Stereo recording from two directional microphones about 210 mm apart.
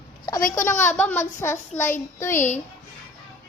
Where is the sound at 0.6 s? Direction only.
10° left (ahead or behind).